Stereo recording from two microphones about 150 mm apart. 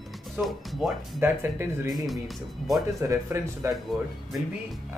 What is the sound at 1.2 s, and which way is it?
Speech, 15° right (ahead or behind).